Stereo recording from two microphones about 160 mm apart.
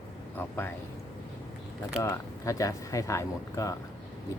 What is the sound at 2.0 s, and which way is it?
Speech, 20° left (ahead or behind).